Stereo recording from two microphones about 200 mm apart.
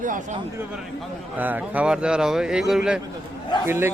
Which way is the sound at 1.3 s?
10° right (ahead or behind).